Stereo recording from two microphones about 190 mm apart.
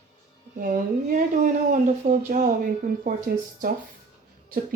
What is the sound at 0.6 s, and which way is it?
Speech, 40° right (ahead or behind).